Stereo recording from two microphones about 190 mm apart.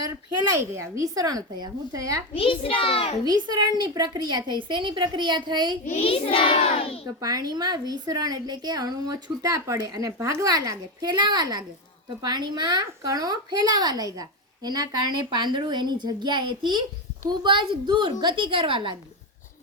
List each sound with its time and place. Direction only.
0.6 s a woman's voice: 15° right (ahead or behind)
2.3 s a child's voice: 30° left (ahead or behind)
3.4 s a woman's voice: 20° right (ahead or behind)
5.8 s a child's voice: 35° left (ahead or behind)
7.2 s a woman's voice: 20° right (ahead or behind)